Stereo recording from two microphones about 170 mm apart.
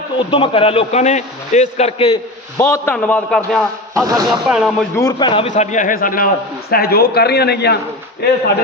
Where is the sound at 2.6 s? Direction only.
10° left (ahead or behind).